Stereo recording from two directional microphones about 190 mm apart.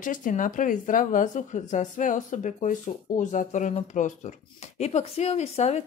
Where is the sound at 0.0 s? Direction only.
45° left (ahead or behind).